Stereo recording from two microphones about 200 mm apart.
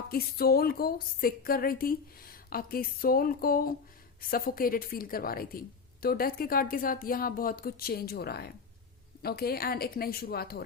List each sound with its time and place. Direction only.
0.1 s a woman's voice: 50° left (ahead or behind)